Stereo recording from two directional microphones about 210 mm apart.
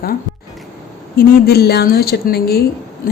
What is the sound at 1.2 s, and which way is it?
Speech, 45° left (ahead or behind).